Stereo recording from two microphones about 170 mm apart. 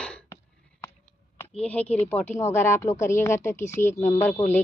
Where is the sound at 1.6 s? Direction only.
10° left (ahead or behind).